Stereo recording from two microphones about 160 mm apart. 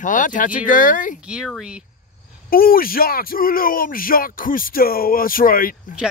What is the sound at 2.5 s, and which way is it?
Speech, 65° left (ahead or behind).